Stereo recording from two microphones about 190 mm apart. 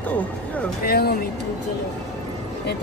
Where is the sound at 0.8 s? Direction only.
55° left (ahead or behind).